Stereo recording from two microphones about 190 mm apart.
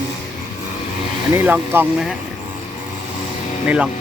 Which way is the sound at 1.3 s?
10° right (ahead or behind).